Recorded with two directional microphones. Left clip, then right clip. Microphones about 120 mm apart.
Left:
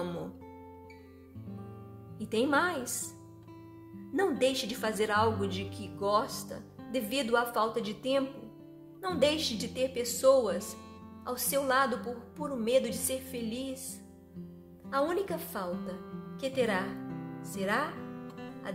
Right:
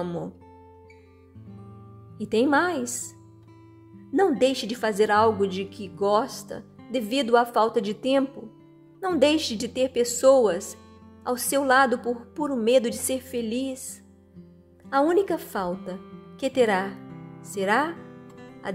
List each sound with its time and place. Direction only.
2.1 s a woman's voice: 55° right (ahead or behind)
4.1 s a woman's voice: 55° right (ahead or behind); by 8.3 s 80° right
9.0 s a woman's voice: 70° right (ahead or behind); by 13.8 s 90° right
14.9 s a woman's voice: 80° right
16.0 s music: 5° right (ahead or behind)
16.3 s a woman's voice: 90° right
17.0 s music: centre (ahead or behind)
17.6 s a woman's voice: 90° right
18.0 s music: centre (ahead or behind)